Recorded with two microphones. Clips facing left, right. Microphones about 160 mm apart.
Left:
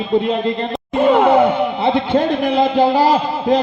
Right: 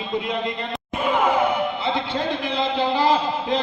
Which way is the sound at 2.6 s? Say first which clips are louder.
Left 7 dB; 40° left (ahead or behind).